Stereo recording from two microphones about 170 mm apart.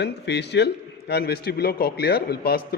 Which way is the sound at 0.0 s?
85° left.